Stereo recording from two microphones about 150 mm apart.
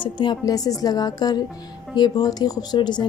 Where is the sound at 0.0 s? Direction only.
30° left (ahead or behind).